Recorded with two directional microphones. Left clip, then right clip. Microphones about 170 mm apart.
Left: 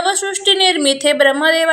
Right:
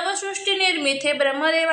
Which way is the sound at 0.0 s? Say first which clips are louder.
Left 8 dB; 25° left (ahead or behind).